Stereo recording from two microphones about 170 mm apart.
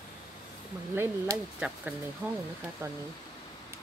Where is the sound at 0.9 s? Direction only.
15° right (ahead or behind).